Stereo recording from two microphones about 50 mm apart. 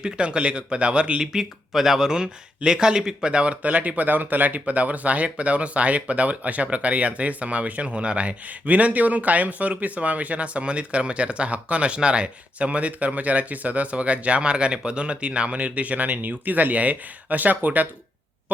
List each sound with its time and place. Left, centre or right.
0.0 s speech: centre
1.2 s speech: centre; by 17.8 s right